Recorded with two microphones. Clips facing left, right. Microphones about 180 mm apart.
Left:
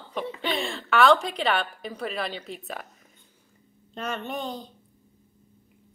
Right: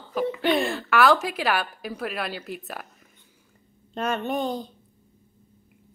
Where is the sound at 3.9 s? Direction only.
50° right (ahead or behind).